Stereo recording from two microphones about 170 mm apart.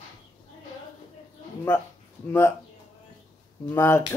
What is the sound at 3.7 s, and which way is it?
Speech, 15° left (ahead or behind).